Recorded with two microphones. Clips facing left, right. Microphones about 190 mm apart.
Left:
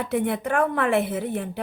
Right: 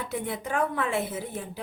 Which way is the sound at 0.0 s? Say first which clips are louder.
Left 8 dB; 60° left (ahead or behind).